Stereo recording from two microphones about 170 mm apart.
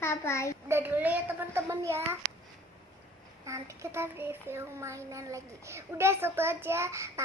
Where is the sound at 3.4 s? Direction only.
15° right (ahead or behind).